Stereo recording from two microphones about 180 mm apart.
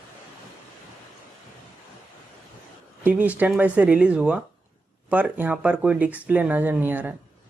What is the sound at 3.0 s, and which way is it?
A woman's voice, 10° right (ahead or behind).